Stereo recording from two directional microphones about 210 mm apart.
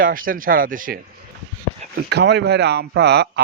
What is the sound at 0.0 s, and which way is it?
Speech, 40° right (ahead or behind).